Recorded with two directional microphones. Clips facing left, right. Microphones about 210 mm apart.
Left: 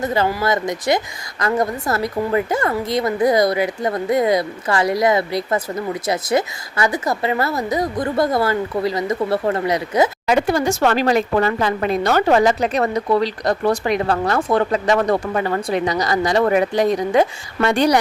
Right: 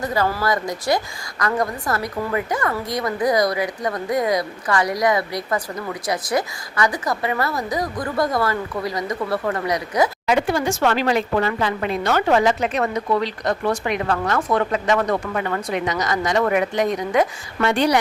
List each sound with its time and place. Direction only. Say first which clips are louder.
0.0 s a woman's voice: left 2 dB; 25° left (ahead or behind)
10.2 s speech: left 2 dB; 40° left (ahead or behind)
17.7 s speech: left 2 dB; 40° left (ahead or behind)